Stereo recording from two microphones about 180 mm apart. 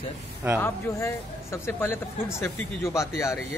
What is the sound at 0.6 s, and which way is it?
A man's voice, 15° left (ahead or behind).